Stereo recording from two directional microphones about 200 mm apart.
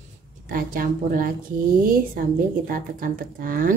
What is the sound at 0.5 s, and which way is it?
Speech, 45° right (ahead or behind).